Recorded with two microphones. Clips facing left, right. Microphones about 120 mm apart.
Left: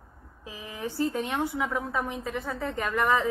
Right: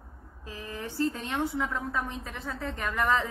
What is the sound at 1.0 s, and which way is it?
A woman's voice, 15° left (ahead or behind).